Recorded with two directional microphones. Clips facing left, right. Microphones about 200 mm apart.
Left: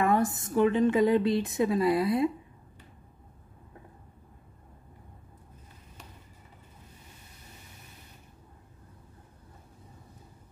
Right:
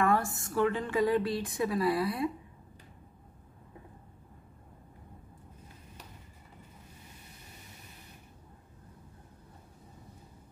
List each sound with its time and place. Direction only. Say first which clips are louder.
0.0 s a woman's voice: left 3 dB; 20° left (ahead or behind)